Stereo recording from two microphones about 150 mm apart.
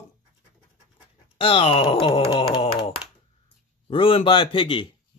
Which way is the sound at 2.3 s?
40° left (ahead or behind).